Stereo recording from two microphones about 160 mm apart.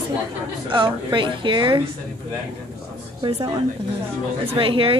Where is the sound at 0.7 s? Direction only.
30° right (ahead or behind).